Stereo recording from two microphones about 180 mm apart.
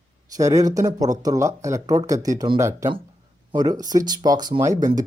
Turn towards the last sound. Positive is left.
turn(degrees=-20)  # may be behind; listen again after turning